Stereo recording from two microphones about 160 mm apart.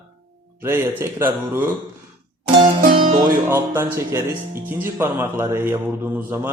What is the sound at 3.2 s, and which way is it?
Speech, 15° right (ahead or behind).